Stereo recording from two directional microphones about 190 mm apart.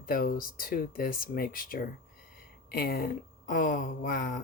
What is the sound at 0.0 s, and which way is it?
Speech, 50° left (ahead or behind).